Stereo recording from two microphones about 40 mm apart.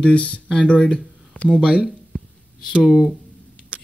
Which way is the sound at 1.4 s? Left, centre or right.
Left.